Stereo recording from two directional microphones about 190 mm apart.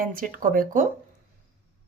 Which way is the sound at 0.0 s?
45° right (ahead or behind).